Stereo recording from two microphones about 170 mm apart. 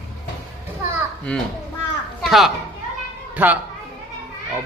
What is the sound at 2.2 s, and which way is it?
Children playing, centre (ahead or behind).